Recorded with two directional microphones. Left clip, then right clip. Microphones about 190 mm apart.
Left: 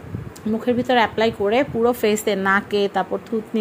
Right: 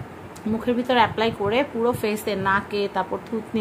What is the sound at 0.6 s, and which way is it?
A woman's voice, 25° left (ahead or behind).